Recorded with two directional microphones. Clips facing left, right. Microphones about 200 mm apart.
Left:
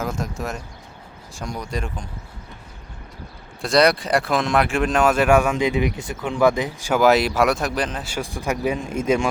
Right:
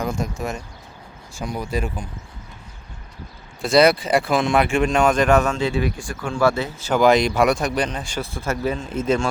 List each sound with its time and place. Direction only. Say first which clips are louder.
0.0 s speech: right 2 dB; centre (ahead or behind)
3.6 s speech: right 2 dB; centre (ahead or behind)